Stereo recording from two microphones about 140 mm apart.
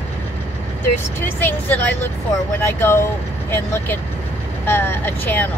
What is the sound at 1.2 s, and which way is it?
Speech, 15° left (ahead or behind).